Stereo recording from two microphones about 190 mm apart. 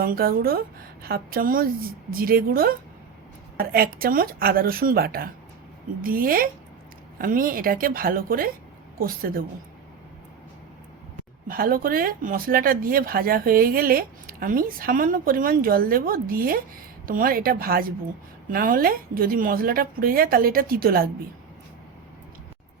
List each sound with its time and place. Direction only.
0.0 s speech: 50° right (ahead or behind)
11.4 s speech: 50° right (ahead or behind)